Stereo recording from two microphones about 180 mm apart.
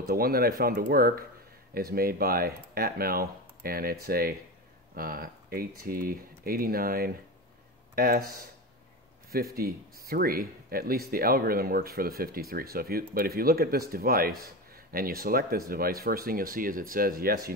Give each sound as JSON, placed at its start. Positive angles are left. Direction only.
{"t": 0.0, "sound": "speech", "side_deg": -55}